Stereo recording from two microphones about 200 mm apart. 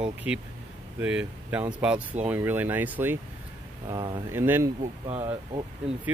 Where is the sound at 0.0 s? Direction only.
5° right (ahead or behind).